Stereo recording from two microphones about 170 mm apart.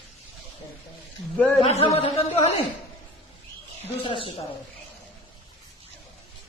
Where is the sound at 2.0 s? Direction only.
35° left (ahead or behind).